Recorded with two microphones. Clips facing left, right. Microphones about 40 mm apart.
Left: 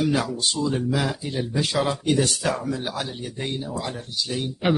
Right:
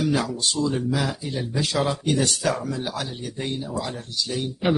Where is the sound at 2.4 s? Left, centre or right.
Centre.